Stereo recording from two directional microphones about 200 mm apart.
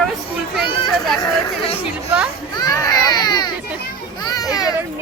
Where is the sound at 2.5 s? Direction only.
20° left (ahead or behind).